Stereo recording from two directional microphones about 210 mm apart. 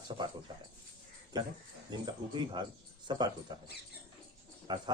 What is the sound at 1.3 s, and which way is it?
Speech, 20° right (ahead or behind).